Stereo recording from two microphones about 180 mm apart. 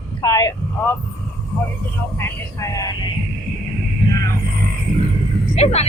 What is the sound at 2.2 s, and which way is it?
Speech, 15° left (ahead or behind).